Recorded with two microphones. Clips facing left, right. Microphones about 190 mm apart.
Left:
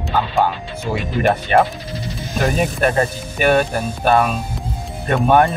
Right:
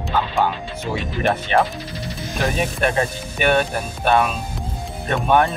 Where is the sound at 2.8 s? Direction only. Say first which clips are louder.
Left 2 dB; 40° left (ahead or behind).